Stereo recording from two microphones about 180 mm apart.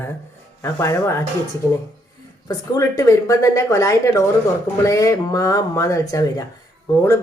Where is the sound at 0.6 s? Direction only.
15° left (ahead or behind).